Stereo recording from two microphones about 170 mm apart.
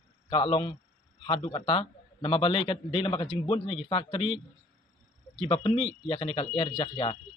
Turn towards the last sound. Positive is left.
turn(degrees=30)  # may be behind; listen again after turning